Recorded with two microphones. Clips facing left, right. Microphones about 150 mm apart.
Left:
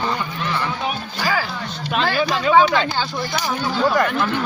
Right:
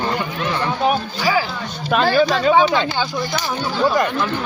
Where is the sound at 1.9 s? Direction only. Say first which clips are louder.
Right 5 dB; 40° right (ahead or behind).